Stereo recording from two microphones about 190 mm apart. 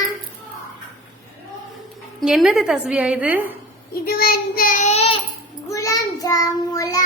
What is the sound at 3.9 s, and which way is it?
Child singing, 50° left (ahead or behind).